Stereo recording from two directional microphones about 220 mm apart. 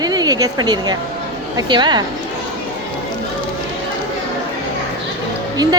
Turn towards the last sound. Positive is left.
turn(degrees=-15)  # may be behind; listen again after turning